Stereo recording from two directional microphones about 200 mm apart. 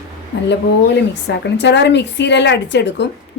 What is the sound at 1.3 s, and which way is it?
A woman's voice, 60° left (ahead or behind).